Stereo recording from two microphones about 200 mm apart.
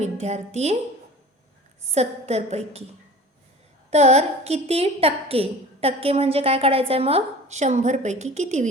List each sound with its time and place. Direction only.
0.0 s a woman's voice: 35° right (ahead or behind)
1.9 s a woman's voice: 35° right (ahead or behind)
3.8 s a woman's voice: 35° right (ahead or behind)